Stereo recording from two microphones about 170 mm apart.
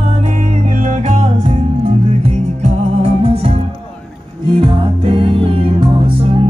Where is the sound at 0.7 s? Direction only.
50° right (ahead or behind).